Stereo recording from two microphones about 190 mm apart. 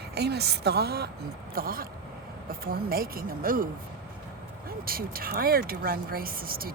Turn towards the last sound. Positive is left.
turn(degrees=-50)  # may be behind; listen again after turning